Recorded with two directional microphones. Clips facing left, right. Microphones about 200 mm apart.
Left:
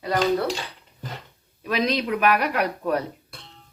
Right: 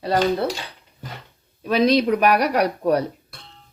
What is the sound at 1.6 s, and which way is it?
Speech, 35° right (ahead or behind).